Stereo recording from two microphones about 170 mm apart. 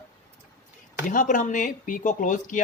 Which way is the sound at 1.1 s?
50° left (ahead or behind).